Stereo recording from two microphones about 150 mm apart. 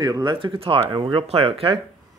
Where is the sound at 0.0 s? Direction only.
30° right (ahead or behind).